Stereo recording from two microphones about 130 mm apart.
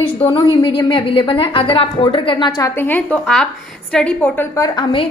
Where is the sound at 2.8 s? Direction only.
15° left (ahead or behind).